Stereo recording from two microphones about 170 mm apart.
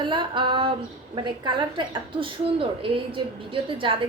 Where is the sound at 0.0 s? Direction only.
30° right (ahead or behind).